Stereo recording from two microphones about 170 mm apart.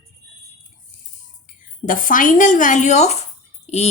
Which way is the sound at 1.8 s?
55° left (ahead or behind).